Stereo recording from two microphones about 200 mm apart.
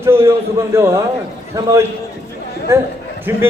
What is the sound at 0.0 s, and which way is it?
A man's voice, 15° right (ahead or behind).